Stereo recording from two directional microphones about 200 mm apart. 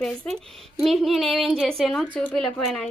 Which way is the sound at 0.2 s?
5° left (ahead or behind).